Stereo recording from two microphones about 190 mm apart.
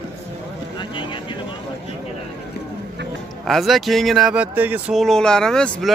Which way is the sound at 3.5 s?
Centre (ahead or behind).